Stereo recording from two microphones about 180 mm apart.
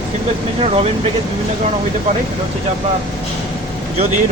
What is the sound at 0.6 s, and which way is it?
Speech, 35° right (ahead or behind).